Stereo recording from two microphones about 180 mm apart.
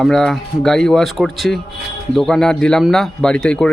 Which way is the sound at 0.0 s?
5° left (ahead or behind).